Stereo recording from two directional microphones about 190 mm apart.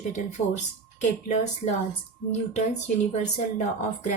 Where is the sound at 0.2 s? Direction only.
35° left (ahead or behind).